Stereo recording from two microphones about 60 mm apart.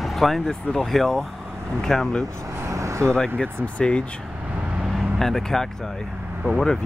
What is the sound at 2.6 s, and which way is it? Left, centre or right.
Vehicle, right.